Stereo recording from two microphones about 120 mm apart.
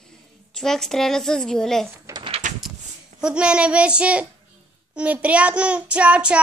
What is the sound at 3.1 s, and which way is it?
Child singing, 10° right (ahead or behind).